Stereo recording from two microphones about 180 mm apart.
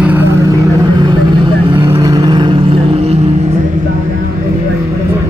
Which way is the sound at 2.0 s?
20° right (ahead or behind).